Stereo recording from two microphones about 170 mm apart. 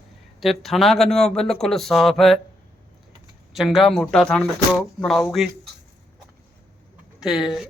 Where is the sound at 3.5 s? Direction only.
Centre (ahead or behind).